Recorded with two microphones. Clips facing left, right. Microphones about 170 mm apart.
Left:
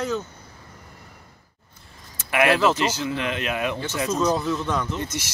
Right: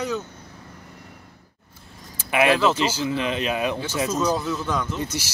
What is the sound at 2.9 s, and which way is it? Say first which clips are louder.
Speech: right 2 dB; 25° right (ahead or behind).